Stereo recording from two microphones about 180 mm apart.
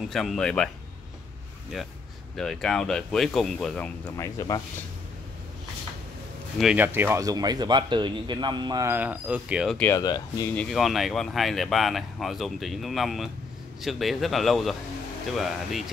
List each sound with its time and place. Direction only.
0.1 s speech: centre (ahead or behind)
2.3 s speech: centre (ahead or behind)
6.6 s speech: 10° right (ahead or behind)
9.8 s speech: 15° left (ahead or behind)
10.5 s speech: 5° left (ahead or behind)